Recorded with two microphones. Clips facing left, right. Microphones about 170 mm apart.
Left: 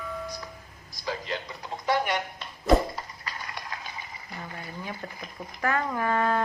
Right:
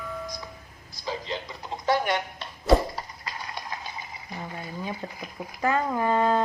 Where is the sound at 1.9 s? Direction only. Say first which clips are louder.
Right 2 dB; 30° right (ahead or behind).